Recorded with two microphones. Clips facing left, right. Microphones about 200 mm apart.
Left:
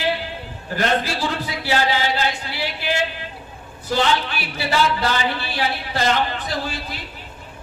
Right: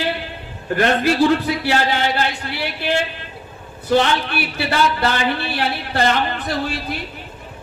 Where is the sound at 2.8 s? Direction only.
55° right (ahead or behind).